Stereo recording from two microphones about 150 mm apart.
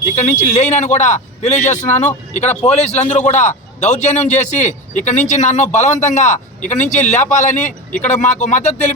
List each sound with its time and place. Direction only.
0.2 s a man's voice: 50° left (ahead or behind)